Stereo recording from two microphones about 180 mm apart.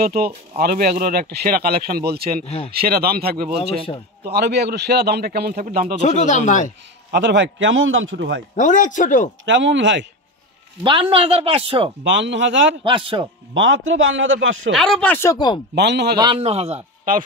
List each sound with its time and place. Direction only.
0.0 s speech: 55° right (ahead or behind)
2.4 s speech: 35° left (ahead or behind)
2.7 s speech: 60° right (ahead or behind)
5.9 s speech: 40° left (ahead or behind)
7.1 s a man's voice: 80° right
8.5 s speech: 45° left (ahead or behind)
9.5 s a man's voice: 90° right
10.8 s speech: 30° right (ahead or behind)
12.0 s a man's voice: 90° right
12.8 s a man's voice: 30° right (ahead or behind)
13.6 s a man's voice: 90° right
14.7 s speech: centre (ahead or behind); by 15.6 s 25° left (ahead or behind)
15.7 s a man's voice: 65° right (ahead or behind)
16.3 s a man's voice: 35° right (ahead or behind)